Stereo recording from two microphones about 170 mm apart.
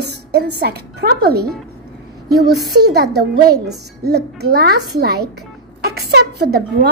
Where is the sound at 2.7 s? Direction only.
70° right (ahead or behind).